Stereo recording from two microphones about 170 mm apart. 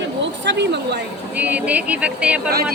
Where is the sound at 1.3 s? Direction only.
10° right (ahead or behind).